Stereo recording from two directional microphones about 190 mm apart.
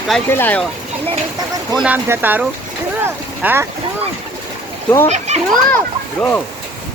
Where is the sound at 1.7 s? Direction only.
10° right (ahead or behind).